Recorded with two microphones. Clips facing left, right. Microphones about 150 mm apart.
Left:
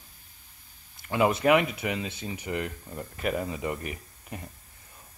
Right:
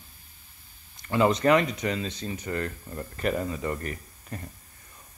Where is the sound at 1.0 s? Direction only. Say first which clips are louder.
Right 1 dB; 10° left (ahead or behind).